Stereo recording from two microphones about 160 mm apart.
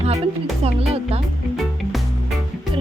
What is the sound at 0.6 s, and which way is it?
Music, 40° right (ahead or behind).